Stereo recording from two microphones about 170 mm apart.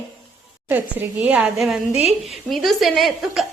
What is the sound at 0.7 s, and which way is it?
A woman's voice, 10° right (ahead or behind).